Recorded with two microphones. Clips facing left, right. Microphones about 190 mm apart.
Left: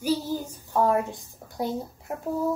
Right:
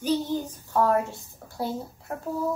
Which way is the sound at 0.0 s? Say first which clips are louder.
Right 1 dB; 10° left (ahead or behind).